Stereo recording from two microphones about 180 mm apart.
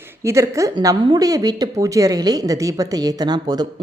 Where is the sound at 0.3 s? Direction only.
15° right (ahead or behind).